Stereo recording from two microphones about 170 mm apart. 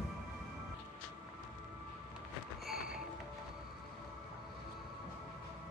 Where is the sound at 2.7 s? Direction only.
5° right (ahead or behind).